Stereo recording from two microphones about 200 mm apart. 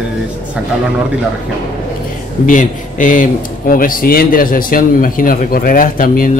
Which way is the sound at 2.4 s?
40° left (ahead or behind).